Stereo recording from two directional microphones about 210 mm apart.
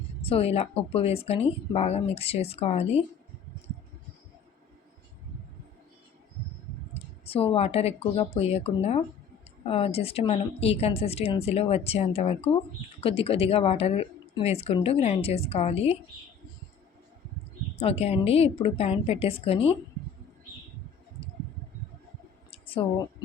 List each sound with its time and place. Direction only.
0.2 s a woman's voice: 25° left (ahead or behind)
6.9 s a woman's voice: 25° left (ahead or behind)
17.7 s a woman's voice: 30° left (ahead or behind)
22.4 s a sound: 25° left (ahead or behind)